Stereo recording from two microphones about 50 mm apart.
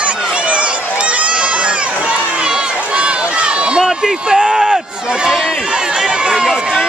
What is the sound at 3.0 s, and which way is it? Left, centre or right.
Run, right.